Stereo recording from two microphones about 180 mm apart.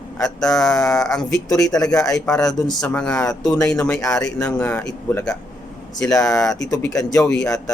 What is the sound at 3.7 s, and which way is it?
Speech, 5° left (ahead or behind).